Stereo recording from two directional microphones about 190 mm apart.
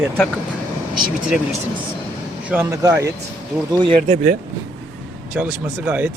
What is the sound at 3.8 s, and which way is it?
Speech, 30° right (ahead or behind).